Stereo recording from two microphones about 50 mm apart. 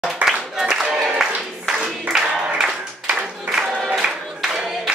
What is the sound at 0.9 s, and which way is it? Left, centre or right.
Music, centre.